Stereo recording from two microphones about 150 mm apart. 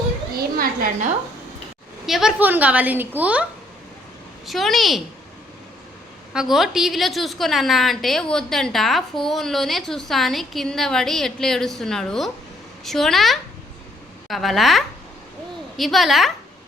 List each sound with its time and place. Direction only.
0.5 s a sound: 80° right
2.0 s a woman's voice: centre (ahead or behind)
4.4 s a woman's voice: centre (ahead or behind)
6.3 s a woman's voice: 5° right (ahead or behind)